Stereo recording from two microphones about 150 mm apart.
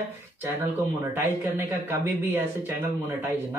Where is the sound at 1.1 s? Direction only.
15° right (ahead or behind).